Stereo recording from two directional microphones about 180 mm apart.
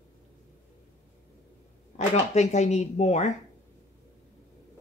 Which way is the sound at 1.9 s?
40° left (ahead or behind).